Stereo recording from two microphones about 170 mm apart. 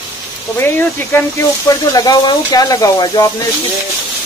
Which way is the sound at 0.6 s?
10° left (ahead or behind).